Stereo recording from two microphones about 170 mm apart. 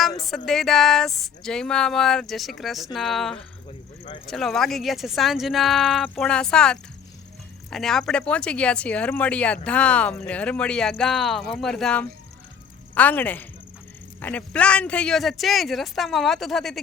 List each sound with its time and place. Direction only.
0.2 s speech: centre (ahead or behind)